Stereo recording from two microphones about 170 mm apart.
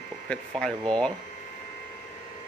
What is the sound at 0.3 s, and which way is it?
Speech, 5° left (ahead or behind).